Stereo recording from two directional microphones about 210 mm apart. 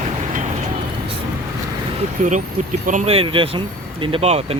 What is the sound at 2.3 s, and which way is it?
Speech, 35° right (ahead or behind).